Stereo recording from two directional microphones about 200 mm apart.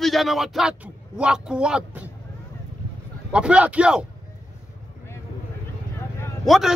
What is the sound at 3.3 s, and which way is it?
Speech, 5° right (ahead or behind).